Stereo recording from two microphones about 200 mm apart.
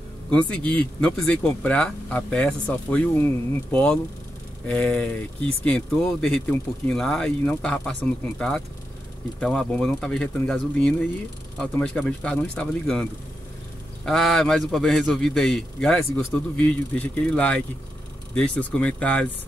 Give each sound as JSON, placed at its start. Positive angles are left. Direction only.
{"t": 0.3, "sound": "speech", "side_deg": 5}
{"t": 14.0, "sound": "speech", "side_deg": 0}